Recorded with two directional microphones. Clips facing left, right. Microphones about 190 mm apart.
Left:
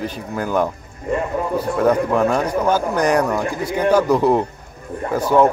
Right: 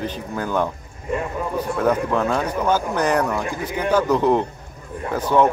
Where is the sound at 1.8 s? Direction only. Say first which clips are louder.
Left 4 dB; 10° left (ahead or behind).